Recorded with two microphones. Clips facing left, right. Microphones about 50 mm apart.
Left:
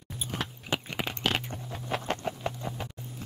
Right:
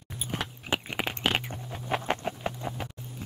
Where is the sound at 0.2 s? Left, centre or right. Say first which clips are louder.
Right 1 dB; centre.